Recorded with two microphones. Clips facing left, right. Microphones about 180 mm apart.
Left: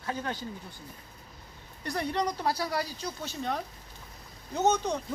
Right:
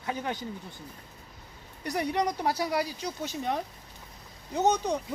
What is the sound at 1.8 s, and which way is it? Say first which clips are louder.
Speech: right 2 dB; 15° right (ahead or behind).